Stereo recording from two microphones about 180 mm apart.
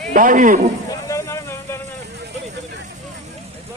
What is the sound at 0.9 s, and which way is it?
Vehicle, 15° left (ahead or behind).